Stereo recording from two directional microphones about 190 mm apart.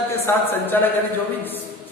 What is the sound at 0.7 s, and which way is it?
Speech, 10° left (ahead or behind).